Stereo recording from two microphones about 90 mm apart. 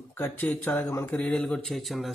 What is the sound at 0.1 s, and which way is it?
Speech, 25° left (ahead or behind).